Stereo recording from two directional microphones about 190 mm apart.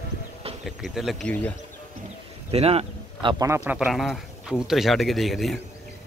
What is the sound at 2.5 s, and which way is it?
Speech, 30° right (ahead or behind).